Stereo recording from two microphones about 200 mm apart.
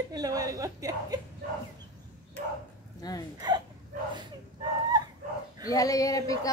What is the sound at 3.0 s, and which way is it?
Speech, 20° left (ahead or behind).